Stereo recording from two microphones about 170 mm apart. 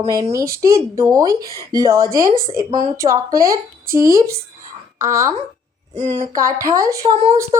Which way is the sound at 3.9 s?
55° right (ahead or behind).